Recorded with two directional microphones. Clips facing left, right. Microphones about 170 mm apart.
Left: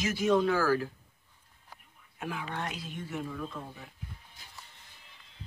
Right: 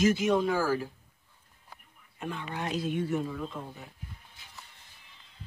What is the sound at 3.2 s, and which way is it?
Speech, 25° right (ahead or behind).